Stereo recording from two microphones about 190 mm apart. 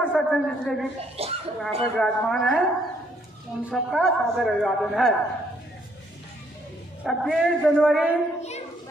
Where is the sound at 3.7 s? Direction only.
Centre (ahead or behind).